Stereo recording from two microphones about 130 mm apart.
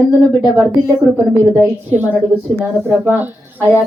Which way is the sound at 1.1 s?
30° left (ahead or behind).